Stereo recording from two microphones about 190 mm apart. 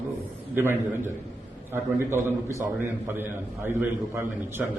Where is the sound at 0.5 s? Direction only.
10° right (ahead or behind).